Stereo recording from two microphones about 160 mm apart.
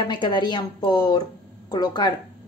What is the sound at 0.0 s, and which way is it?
A woman's voice, 30° left (ahead or behind).